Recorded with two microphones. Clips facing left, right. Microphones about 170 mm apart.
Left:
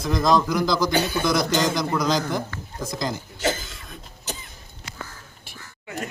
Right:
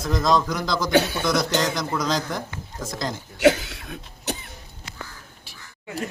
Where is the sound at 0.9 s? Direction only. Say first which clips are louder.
Right 3 dB; 65° right (ahead or behind).